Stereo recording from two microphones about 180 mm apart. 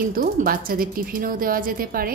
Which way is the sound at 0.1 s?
50° right (ahead or behind).